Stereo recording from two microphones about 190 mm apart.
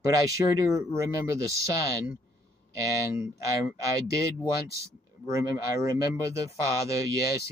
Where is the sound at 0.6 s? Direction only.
15° right (ahead or behind).